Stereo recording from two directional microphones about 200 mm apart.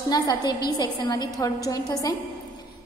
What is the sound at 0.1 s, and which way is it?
A woman's voice, 20° left (ahead or behind).